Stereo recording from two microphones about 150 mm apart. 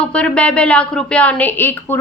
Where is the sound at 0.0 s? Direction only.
10° left (ahead or behind).